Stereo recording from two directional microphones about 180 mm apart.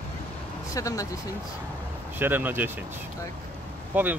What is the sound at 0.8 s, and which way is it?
Speech, 20° left (ahead or behind).